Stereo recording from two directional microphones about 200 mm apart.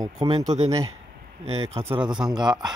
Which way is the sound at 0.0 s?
15° right (ahead or behind).